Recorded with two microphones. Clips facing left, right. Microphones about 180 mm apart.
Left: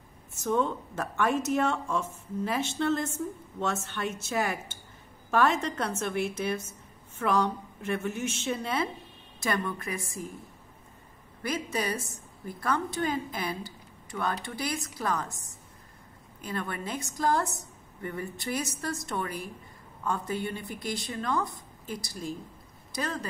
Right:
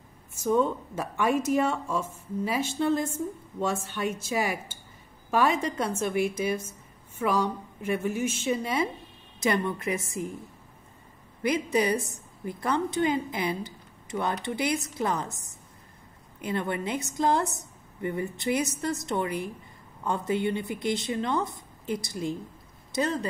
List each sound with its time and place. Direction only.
0.4 s a woman's voice: 10° right (ahead or behind)
9.4 s a woman's voice: 20° right (ahead or behind)
11.4 s a woman's voice: 20° right (ahead or behind)
16.4 s a woman's voice: 20° right (ahead or behind)
22.9 s a woman's voice: 25° right (ahead or behind)